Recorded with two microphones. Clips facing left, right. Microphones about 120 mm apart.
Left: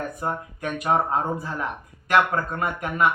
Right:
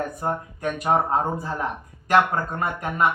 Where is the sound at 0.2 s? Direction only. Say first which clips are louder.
Right 2 dB; 30° right (ahead or behind).